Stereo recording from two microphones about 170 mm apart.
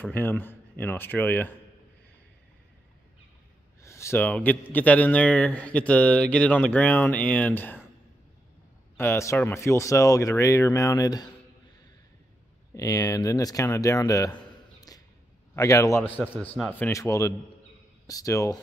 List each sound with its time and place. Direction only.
0.0 s speech: 10° left (ahead or behind)
3.8 s speech: 15° left (ahead or behind)
8.9 s speech: 15° left (ahead or behind)
12.7 s speech: 20° left (ahead or behind)